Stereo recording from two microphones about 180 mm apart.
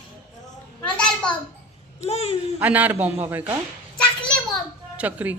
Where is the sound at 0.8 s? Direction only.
5° left (ahead or behind).